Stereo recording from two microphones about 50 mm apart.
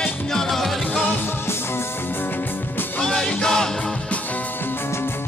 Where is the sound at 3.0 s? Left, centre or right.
Centre.